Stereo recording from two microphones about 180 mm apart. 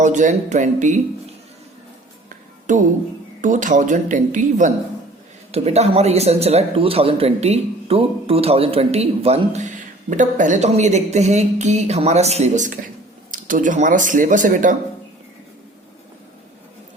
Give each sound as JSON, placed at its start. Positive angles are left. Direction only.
{"t": 0.0, "sound": "speech", "side_deg": -40}
{"t": 2.7, "sound": "a man's voice", "side_deg": -45}